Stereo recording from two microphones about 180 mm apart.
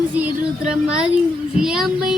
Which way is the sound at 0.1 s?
10° right (ahead or behind).